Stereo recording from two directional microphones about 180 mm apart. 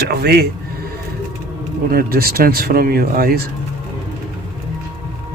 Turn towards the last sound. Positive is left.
turn(degrees=-55)  # may be behind; listen again after turning